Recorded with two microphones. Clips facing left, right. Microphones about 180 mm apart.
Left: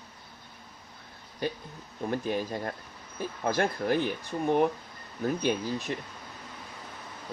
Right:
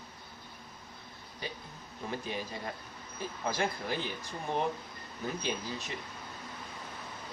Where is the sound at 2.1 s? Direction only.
50° left (ahead or behind).